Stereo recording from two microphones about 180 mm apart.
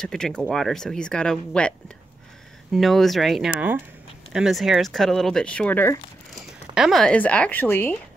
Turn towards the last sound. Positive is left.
turn(degrees=10)  # may be behind; listen again after turning